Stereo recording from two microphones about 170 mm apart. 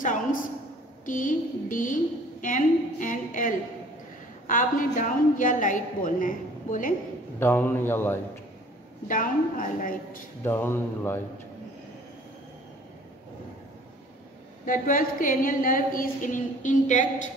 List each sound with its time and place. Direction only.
0.0 s a woman's voice: 50° left (ahead or behind)
7.3 s a man's voice: 10° left (ahead or behind)
9.0 s a woman's voice: 50° left (ahead or behind)
10.4 s a man's voice: 15° left (ahead or behind)
14.7 s a woman's voice: 55° left (ahead or behind)